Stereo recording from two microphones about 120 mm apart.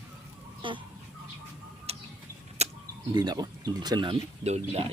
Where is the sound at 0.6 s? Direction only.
45° right (ahead or behind).